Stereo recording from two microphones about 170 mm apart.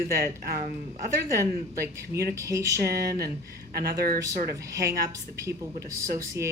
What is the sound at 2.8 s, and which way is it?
Speech, 65° right (ahead or behind).